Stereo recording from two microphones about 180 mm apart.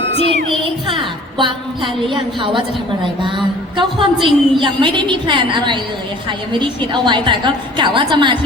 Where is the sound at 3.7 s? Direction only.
30° right (ahead or behind).